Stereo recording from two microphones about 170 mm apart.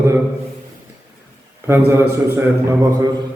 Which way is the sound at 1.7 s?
15° right (ahead or behind).